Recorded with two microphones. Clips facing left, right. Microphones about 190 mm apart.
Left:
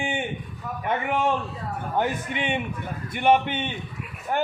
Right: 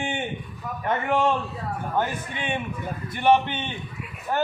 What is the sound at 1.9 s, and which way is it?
A man's voice, 20° left (ahead or behind).